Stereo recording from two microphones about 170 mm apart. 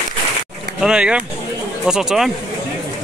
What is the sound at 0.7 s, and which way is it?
Speech, 5° right (ahead or behind).